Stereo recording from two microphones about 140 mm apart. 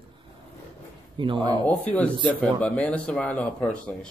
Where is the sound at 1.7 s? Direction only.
10° left (ahead or behind).